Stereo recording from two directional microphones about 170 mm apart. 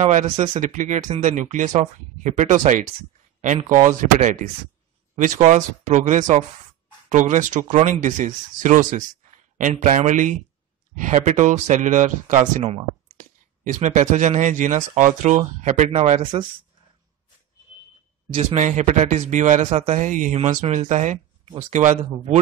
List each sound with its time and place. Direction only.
0.0 s speech: 45° right (ahead or behind)
18.3 s speech: 40° right (ahead or behind)